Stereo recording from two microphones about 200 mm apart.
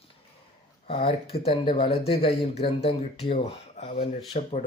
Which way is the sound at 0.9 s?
30° left (ahead or behind).